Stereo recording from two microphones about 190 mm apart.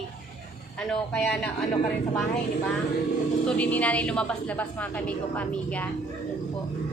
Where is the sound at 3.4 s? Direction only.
5° left (ahead or behind).